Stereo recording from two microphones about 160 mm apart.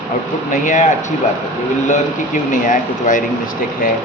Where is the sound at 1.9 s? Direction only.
55° left (ahead or behind).